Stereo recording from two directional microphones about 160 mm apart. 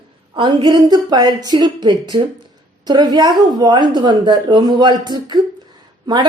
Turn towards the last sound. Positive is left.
turn(degrees=-25)  # may be behind; listen again after turning